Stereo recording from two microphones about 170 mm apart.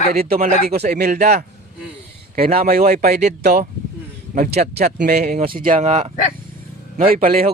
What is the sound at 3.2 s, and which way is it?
Speech, 45° right (ahead or behind).